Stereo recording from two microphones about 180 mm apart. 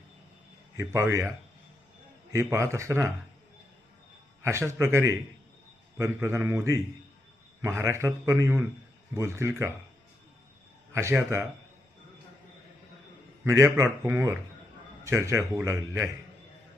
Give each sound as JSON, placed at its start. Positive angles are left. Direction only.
{"t": 0.8, "sound": "a man's voice", "side_deg": -15}
{"t": 2.3, "sound": "a man's voice", "side_deg": -15}
{"t": 4.4, "sound": "a man's voice", "side_deg": -15}
{"t": 10.9, "sound": "a man's voice", "side_deg": -15}
{"t": 13.4, "sound": "a man's voice", "side_deg": -15}